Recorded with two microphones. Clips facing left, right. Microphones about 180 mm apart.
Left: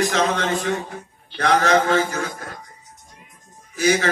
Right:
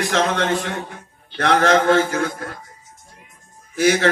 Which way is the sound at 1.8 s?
50° right (ahead or behind).